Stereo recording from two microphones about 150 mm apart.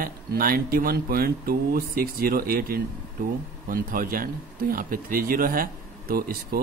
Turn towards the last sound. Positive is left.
turn(degrees=-80)